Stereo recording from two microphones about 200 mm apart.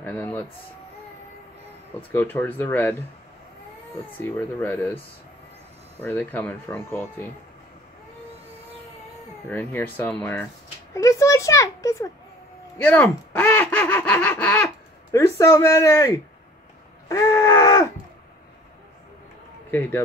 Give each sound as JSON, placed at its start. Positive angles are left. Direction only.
{"t": 0.0, "sound": "a child's voice", "side_deg": 10}
{"t": 2.0, "sound": "a child's voice", "side_deg": 10}
{"t": 4.2, "sound": "a child's voice", "side_deg": 10}
{"t": 6.0, "sound": "a child's voice", "side_deg": 10}
{"t": 9.5, "sound": "a child's voice", "side_deg": 10}
{"t": 17.1, "sound": "a sound", "side_deg": 15}